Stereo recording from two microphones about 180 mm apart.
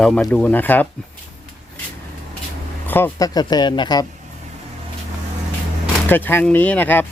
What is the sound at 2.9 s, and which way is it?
Speech, 15° left (ahead or behind).